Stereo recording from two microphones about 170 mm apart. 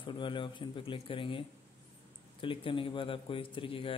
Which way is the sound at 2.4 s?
30° left (ahead or behind).